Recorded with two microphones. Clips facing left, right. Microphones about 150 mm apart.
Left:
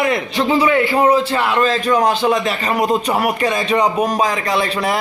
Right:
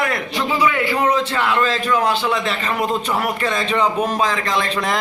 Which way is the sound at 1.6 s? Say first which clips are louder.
Left 3 dB; 40° left (ahead or behind).